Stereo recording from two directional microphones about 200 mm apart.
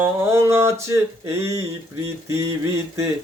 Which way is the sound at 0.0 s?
15° right (ahead or behind).